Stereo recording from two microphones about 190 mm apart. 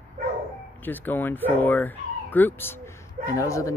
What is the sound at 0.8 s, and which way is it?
Speech, 10° left (ahead or behind).